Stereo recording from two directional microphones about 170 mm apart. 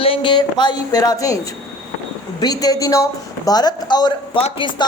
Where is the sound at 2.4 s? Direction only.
20° left (ahead or behind).